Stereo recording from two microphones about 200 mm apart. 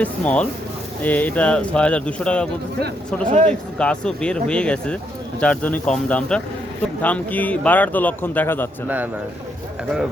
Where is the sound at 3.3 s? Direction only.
35° right (ahead or behind).